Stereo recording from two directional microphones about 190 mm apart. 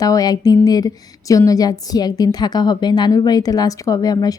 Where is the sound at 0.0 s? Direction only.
20° left (ahead or behind).